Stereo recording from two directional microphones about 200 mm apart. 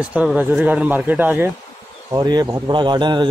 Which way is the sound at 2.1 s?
20° right (ahead or behind).